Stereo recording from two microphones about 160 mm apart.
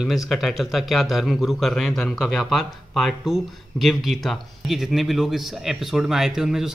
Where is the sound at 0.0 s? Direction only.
Centre (ahead or behind).